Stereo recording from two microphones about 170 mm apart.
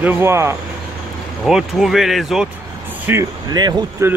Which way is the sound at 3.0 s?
15° right (ahead or behind).